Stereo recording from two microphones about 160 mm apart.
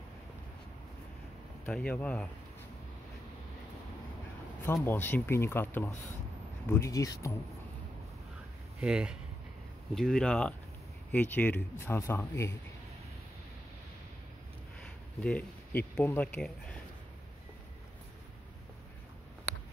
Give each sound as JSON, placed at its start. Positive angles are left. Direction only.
{"t": 1.7, "sound": "speech", "side_deg": 5}
{"t": 4.8, "sound": "speech", "side_deg": 10}
{"t": 8.8, "sound": "speech", "side_deg": -5}
{"t": 15.1, "sound": "speech", "side_deg": 10}